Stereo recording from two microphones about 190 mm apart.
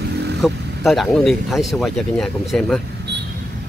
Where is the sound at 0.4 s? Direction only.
Centre (ahead or behind).